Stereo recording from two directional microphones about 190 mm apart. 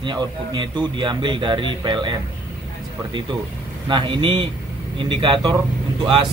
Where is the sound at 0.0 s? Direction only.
25° right (ahead or behind).